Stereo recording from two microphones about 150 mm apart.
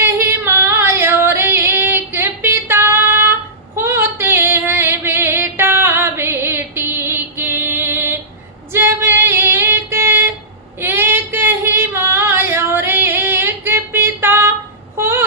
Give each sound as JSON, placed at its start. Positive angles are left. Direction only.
{"t": 0.0, "sound": "yodeling", "side_deg": -15}
{"t": 3.8, "sound": "female singing", "side_deg": -15}
{"t": 14.9, "sound": "a sound", "side_deg": -15}